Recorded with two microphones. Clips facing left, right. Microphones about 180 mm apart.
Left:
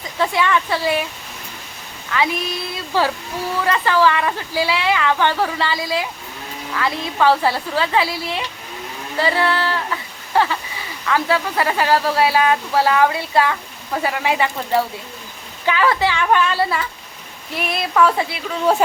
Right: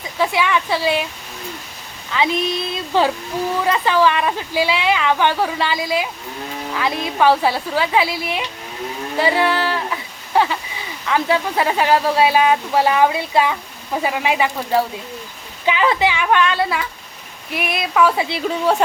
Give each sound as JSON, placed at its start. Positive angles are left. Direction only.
{"t": 0.2, "sound": "speech", "side_deg": -5}
{"t": 2.1, "sound": "female singing", "side_deg": -20}
{"t": 3.6, "sound": "speech", "side_deg": -15}
{"t": 16.3, "sound": "speech", "side_deg": 5}